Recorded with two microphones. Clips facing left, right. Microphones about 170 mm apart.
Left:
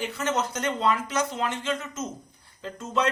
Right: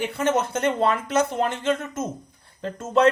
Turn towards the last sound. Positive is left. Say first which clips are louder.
# right 7 dB
turn(degrees=-55)  # may be behind; listen again after turning